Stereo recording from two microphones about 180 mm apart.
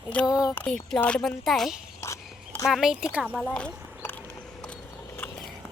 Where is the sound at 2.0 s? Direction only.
15° left (ahead or behind).